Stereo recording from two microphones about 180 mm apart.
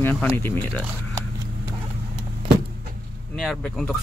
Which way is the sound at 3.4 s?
Centre (ahead or behind).